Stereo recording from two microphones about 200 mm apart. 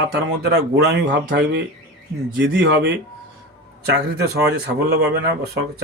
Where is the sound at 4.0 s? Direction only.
55° right (ahead or behind).